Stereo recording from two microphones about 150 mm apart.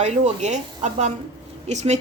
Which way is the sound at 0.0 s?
50° right (ahead or behind).